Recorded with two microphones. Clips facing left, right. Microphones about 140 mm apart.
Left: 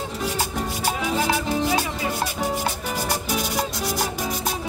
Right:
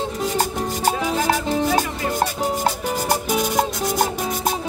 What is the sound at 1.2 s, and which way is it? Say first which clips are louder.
Music: right 3 dB; 45° right (ahead or behind).